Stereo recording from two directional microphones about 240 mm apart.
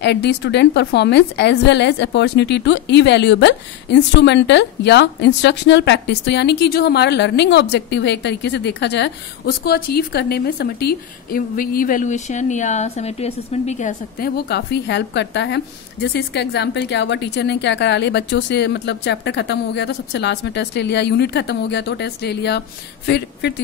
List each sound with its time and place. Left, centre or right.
0.0 s a woman's voice: left